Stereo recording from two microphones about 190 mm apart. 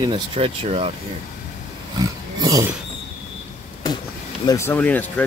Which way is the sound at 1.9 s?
20° right (ahead or behind).